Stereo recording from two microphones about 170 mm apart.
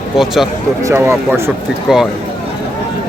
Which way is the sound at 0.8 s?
15° right (ahead or behind).